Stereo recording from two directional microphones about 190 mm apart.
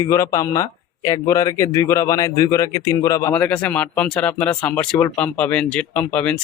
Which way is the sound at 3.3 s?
5° left (ahead or behind).